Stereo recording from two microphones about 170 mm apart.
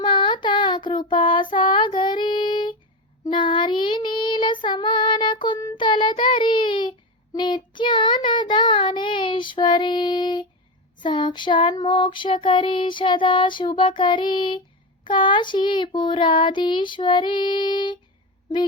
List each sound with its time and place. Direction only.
0.0 s child singing: 30° left (ahead or behind)